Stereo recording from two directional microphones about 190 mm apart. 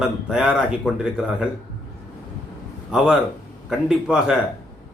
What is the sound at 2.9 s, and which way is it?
A man's voice, 5° right (ahead or behind).